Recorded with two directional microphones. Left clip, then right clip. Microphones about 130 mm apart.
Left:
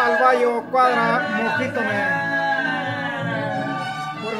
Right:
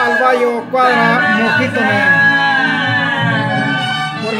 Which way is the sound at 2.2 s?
35° left (ahead or behind).